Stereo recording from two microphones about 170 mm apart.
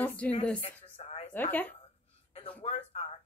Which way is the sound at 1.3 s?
10° left (ahead or behind).